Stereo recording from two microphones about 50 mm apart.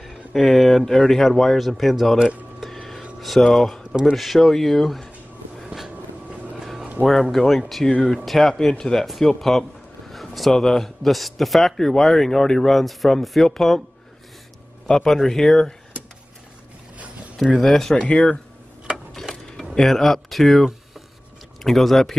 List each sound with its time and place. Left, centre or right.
0.3 s a man's voice: centre
2.6 s a sound: centre
3.4 s a man's voice: centre
5.9 s vehicle: right
7.1 s a man's voice: centre
14.9 s speech: centre
17.6 s speech: centre
17.9 s speech: left
19.1 s a sound: centre
19.7 s a man's voice: centre